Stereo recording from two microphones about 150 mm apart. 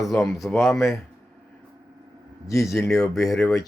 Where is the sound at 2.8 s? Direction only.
Centre (ahead or behind).